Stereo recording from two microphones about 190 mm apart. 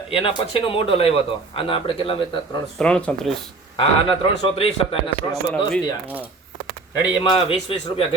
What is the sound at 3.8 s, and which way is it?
Speech, 25° left (ahead or behind).